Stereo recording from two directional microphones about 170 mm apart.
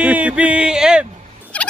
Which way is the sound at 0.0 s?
5° right (ahead or behind).